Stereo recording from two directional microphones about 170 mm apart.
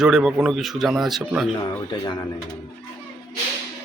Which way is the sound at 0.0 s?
5° right (ahead or behind).